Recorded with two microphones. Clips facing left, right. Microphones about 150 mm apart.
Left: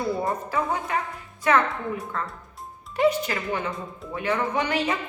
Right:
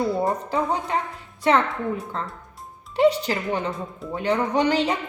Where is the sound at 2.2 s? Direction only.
30° right (ahead or behind).